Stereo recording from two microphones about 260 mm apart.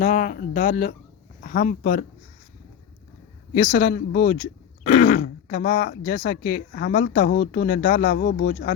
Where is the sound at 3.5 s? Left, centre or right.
Left.